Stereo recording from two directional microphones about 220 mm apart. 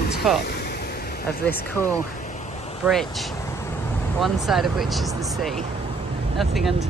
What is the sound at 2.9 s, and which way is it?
Speech, centre (ahead or behind).